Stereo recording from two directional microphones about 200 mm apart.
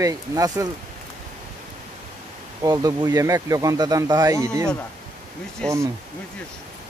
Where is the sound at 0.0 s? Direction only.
15° right (ahead or behind).